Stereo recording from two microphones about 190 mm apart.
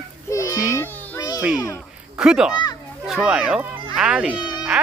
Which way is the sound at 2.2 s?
5° right (ahead or behind).